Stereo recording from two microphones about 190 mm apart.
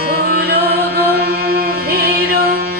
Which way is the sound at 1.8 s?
55° right (ahead or behind).